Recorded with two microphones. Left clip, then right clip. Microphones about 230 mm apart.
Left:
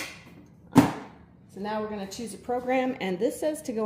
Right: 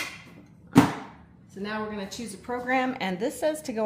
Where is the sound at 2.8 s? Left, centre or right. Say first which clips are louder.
Even; right.